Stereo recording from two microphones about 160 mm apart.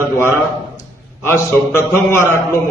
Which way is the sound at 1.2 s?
15° left (ahead or behind).